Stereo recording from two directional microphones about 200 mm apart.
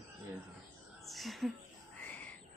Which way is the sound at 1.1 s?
Centre (ahead or behind).